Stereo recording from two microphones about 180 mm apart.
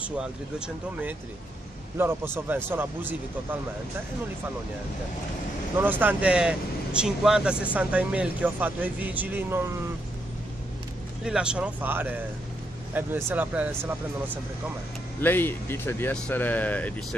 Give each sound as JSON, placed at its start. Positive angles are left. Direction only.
{"t": 0.0, "sound": "speech", "side_deg": -5}
{"t": 5.8, "sound": "speech", "side_deg": -10}
{"t": 11.2, "sound": "speech", "side_deg": -5}
{"t": 15.1, "sound": "speech", "side_deg": 10}